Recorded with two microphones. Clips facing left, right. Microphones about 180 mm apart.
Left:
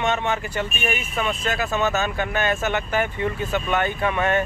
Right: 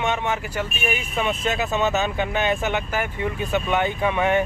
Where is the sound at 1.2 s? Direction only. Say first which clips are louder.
Right 1 dB; 20° right (ahead or behind).